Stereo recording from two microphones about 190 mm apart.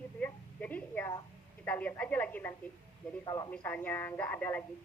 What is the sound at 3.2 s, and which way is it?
Speech, 20° left (ahead or behind).